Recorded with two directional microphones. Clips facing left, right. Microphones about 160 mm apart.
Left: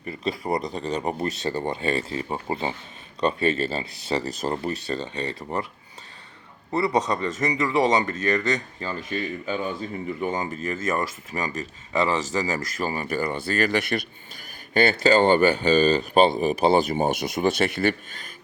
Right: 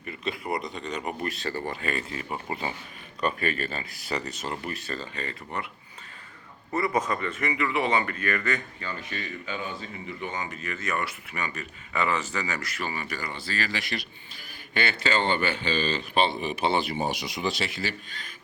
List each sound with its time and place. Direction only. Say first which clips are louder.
0.0 s speech: left 5 dB; 35° left (ahead or behind)
6.7 s speech: left 4 dB; 35° left (ahead or behind); by 14.0 s 50° left (ahead or behind)
14.7 s speech: left 9 dB; 40° left (ahead or behind)